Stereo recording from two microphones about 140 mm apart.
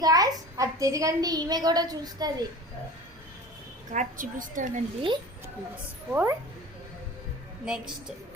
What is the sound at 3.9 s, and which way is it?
Speech, 70° right (ahead or behind).